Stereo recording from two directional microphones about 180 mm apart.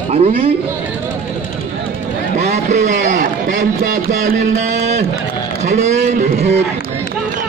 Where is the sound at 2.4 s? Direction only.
40° right (ahead or behind).